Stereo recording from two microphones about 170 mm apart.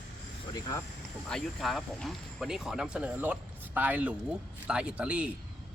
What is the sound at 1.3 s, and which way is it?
Speech, centre (ahead or behind).